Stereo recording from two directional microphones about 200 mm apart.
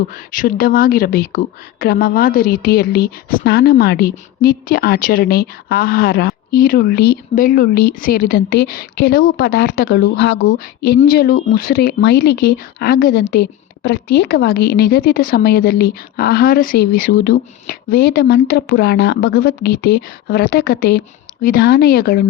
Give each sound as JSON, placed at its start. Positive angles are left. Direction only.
{"t": 0.1, "sound": "speech", "side_deg": 45}